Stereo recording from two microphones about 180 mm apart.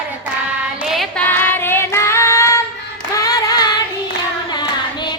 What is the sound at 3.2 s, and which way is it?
Singing, 20° left (ahead or behind).